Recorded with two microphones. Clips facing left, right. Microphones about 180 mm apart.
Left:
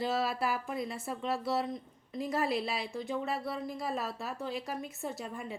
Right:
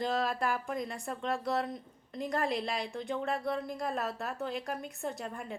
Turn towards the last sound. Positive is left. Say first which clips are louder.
# right 1 dB
turn(degrees=0)  # may be behind; listen again after turning